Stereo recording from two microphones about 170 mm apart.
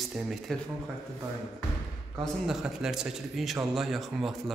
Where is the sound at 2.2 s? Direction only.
5° right (ahead or behind).